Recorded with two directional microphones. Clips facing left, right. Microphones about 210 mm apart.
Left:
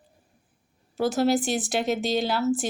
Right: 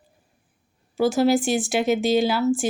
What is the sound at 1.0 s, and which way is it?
Speech, centre (ahead or behind).